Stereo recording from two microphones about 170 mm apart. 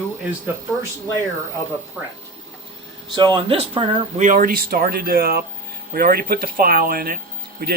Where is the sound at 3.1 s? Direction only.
30° right (ahead or behind).